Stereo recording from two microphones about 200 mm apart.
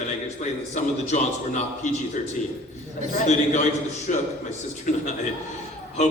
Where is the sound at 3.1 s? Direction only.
35° left (ahead or behind).